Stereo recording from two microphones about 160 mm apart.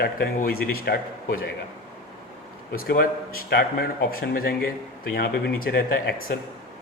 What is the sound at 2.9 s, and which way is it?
A man's voice, 70° left (ahead or behind).